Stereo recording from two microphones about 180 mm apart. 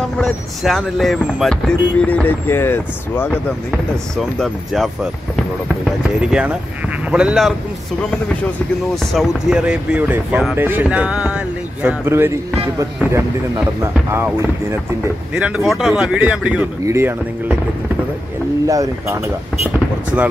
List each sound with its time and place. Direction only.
0.2 s speech: centre (ahead or behind)
3.7 s speech: centre (ahead or behind)
9.0 s speech: centre (ahead or behind)
15.3 s speech: 5° right (ahead or behind)
18.7 s speech: 15° right (ahead or behind)